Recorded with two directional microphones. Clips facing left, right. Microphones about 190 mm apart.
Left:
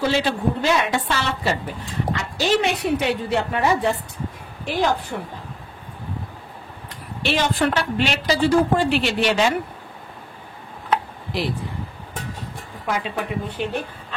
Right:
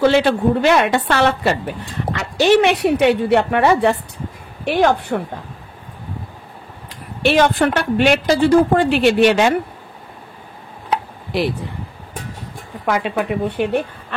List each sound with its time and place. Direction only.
0.0 s a woman's voice: 60° right (ahead or behind)
7.2 s a woman's voice: 55° right (ahead or behind)
12.8 s a woman's voice: 70° right (ahead or behind)